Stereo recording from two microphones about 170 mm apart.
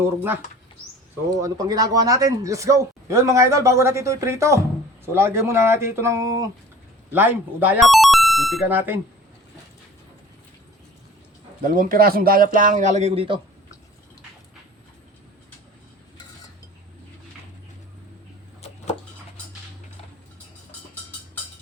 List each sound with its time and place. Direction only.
0.0 s speech: 15° right (ahead or behind)
1.4 s speech: 20° right (ahead or behind)
7.9 s music: centre (ahead or behind)
8.6 s speech: 10° right (ahead or behind)
11.6 s a man's voice: 55° right (ahead or behind); by 13.4 s 30° right (ahead or behind)